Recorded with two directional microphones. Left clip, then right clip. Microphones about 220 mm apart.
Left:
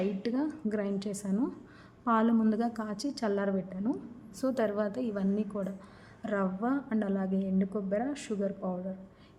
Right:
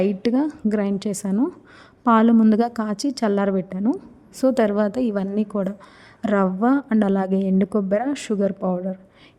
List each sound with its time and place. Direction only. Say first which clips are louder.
0.0 s a woman's voice: right 11 dB; 45° right (ahead or behind)